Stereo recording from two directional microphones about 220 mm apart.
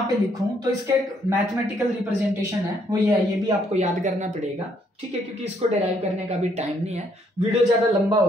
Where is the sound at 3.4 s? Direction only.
30° right (ahead or behind).